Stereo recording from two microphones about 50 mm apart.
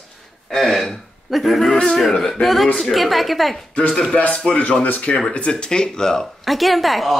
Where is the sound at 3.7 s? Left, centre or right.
Left.